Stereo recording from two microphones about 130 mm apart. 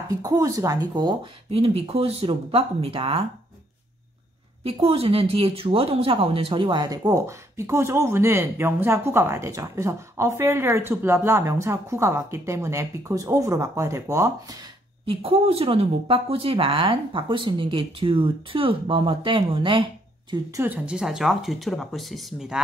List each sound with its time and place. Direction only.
0.1 s speech: 25° right (ahead or behind); by 3.3 s 45° right (ahead or behind)
4.8 s speech: 45° right (ahead or behind); by 14.6 s 25° right (ahead or behind)
15.0 s speech: 50° right (ahead or behind)
20.5 s speech: 15° right (ahead or behind)